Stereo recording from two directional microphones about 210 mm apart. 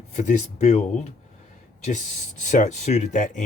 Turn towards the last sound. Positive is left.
turn(degrees=35)  # may be behind; listen again after turning